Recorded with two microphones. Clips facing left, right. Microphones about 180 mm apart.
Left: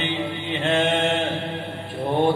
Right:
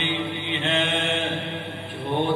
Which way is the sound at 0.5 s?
45° left (ahead or behind).